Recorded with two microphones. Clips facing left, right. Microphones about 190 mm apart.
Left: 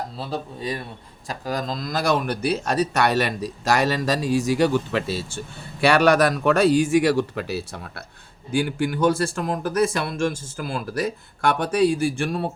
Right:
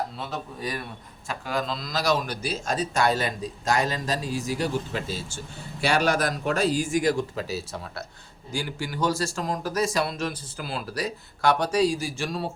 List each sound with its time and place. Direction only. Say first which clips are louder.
0.2 s speech: left 4 dB; 30° left (ahead or behind)
1.3 s speech: left 2 dB; 40° left (ahead or behind); by 12.5 s 55° left (ahead or behind)